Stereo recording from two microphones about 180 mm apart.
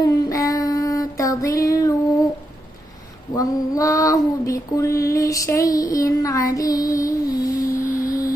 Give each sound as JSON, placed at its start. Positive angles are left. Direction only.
{"t": 0.0, "sound": "child singing", "side_deg": 20}
{"t": 3.3, "sound": "female singing", "side_deg": 20}
{"t": 7.8, "sound": "a sound", "side_deg": 50}